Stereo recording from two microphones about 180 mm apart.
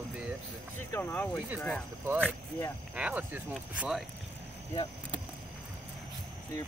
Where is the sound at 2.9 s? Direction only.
10° right (ahead or behind).